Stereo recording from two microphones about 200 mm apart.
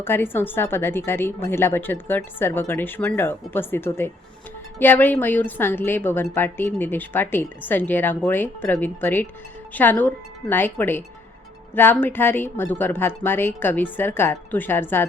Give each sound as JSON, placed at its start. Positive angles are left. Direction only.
{"t": 0.0, "sound": "a woman's voice", "side_deg": 10}